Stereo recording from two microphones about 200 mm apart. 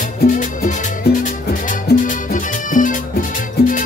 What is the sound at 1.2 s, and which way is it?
Music, 40° left (ahead or behind).